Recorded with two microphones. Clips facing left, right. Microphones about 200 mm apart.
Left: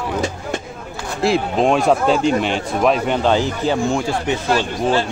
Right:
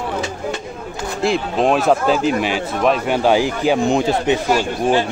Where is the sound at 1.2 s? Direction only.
Centre (ahead or behind).